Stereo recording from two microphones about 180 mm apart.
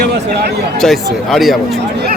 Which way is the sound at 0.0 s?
65° right (ahead or behind).